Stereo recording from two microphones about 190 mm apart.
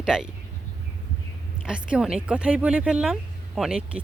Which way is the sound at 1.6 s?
5° right (ahead or behind).